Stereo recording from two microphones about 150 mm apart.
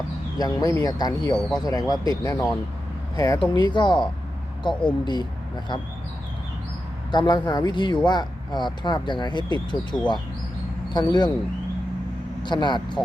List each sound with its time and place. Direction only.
0.3 s speech: 25° left (ahead or behind)
1.4 s speech: 5° left (ahead or behind)
1.6 s speech: 25° left (ahead or behind)
7.1 s speech: 30° left (ahead or behind)
10.9 s speech: 30° left (ahead or behind)
12.4 s speech: 30° left (ahead or behind)